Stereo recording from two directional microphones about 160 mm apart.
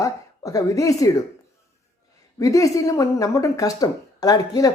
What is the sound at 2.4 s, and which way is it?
Speech, 20° left (ahead or behind).